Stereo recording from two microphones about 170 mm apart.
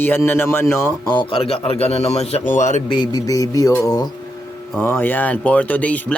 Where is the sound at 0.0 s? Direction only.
10° left (ahead or behind).